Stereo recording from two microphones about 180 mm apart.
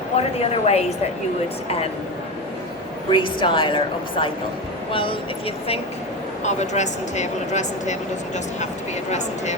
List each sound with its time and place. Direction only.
0.2 s speech: 35° left (ahead or behind)
3.1 s a woman's voice: 25° left (ahead or behind)
6.4 s speech: 40° left (ahead or behind)
9.0 s speech: 40° left (ahead or behind)